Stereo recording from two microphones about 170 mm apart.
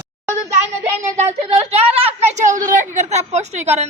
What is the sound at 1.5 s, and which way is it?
Speech, 35° right (ahead or behind).